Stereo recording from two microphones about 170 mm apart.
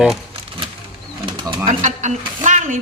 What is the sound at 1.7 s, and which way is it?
Speech, 45° right (ahead or behind).